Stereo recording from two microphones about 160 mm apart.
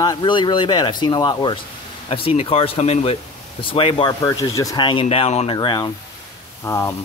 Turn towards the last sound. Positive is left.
turn(degrees=20)  # may be behind; listen again after turning